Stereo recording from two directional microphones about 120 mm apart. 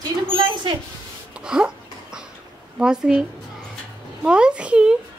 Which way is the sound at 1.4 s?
5° right (ahead or behind).